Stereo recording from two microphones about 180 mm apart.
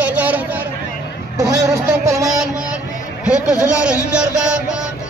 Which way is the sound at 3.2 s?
5° right (ahead or behind).